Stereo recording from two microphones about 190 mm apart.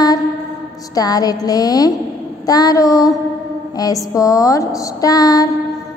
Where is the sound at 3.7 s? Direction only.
20° left (ahead or behind).